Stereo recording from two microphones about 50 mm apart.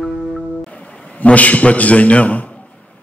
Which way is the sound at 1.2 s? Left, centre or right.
Left.